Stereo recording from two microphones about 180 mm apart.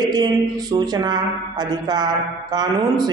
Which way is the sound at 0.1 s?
20° right (ahead or behind).